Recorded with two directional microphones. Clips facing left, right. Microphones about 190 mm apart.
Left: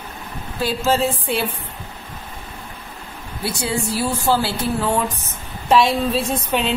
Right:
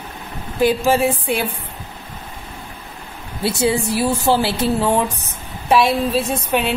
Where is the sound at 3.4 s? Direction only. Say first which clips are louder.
Right 5 dB; 25° right (ahead or behind).